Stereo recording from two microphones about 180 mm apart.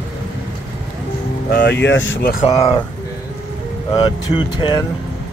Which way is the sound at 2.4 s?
30° left (ahead or behind).